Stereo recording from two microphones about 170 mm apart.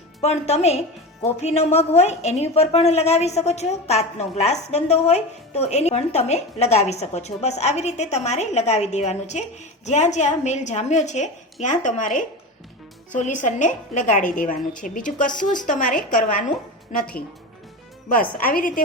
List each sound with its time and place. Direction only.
0.2 s a woman's voice: 40° left (ahead or behind); by 18.8 s 55° left (ahead or behind)